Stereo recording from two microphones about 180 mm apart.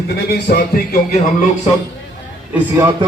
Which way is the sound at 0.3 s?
60° left (ahead or behind).